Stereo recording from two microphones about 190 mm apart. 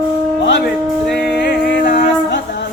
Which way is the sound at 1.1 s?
65° left (ahead or behind).